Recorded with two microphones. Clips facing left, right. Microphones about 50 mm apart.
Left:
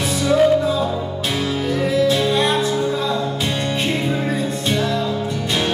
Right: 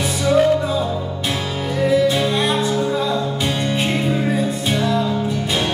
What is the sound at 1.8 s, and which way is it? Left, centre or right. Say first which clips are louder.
Music: right 2 dB; centre.